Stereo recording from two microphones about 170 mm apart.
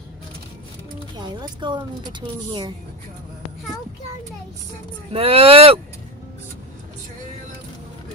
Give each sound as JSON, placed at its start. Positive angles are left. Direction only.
{"t": 1.1, "sound": "speech", "side_deg": -25}
{"t": 5.1, "sound": "speech", "side_deg": -35}